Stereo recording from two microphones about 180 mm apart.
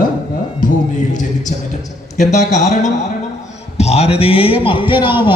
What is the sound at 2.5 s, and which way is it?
A man's voice, 40° left (ahead or behind).